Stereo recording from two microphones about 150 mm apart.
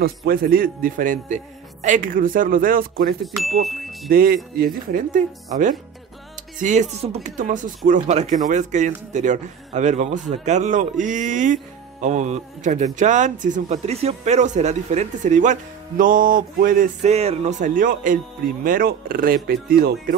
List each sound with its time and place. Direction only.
0.0 s a man's voice: 75° right (ahead or behind)
3.6 s ding: centre (ahead or behind)
4.1 s a man's voice: 75° right (ahead or behind); by 7.2 s 45° right (ahead or behind)
7.2 s a man's voice: 60° right (ahead or behind)